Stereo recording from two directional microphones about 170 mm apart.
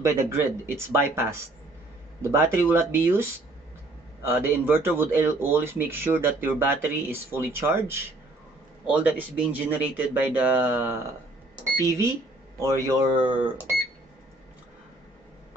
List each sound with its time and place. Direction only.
0.0 s speech: 15° right (ahead or behind)